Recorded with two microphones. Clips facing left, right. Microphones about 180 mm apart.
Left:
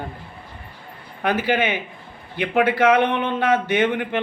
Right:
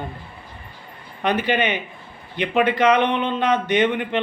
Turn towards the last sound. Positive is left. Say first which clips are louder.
# right 1 dB
turn(degrees=10)  # may be behind; listen again after turning